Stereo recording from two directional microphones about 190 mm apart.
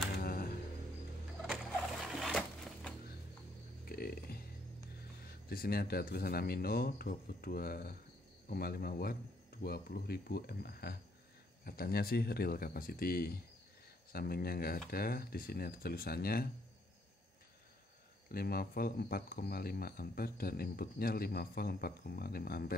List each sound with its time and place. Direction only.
0.2 s music: 50° left (ahead or behind)
2.0 s a sound: centre (ahead or behind)
3.8 s music: 50° left (ahead or behind)
5.5 s speech: 50° left (ahead or behind)
18.3 s speech: 50° left (ahead or behind)